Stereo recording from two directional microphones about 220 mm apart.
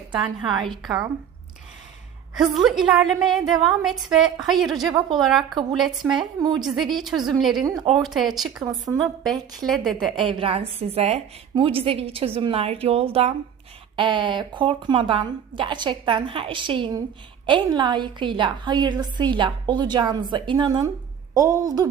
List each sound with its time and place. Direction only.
0.7 s a woman's voice: centre (ahead or behind)
2.3 s a woman's voice: centre (ahead or behind)
7.8 s a woman's voice: 20° right (ahead or behind)
8.0 s a woman's voice: centre (ahead or behind)
10.2 s a woman's voice: 25° right (ahead or behind)